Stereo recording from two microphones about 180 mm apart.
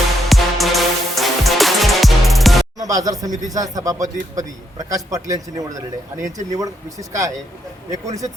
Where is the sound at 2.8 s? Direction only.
20° right (ahead or behind).